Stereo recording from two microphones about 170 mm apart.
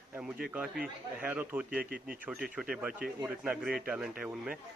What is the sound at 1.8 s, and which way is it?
Speech, 60° right (ahead or behind).